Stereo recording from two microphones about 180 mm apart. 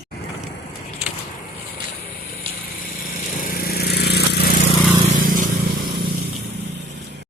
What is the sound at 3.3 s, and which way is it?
Lawn mower, 50° left (ahead or behind).